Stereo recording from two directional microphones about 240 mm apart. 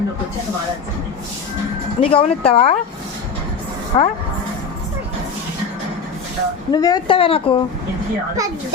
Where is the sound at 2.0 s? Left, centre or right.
Left.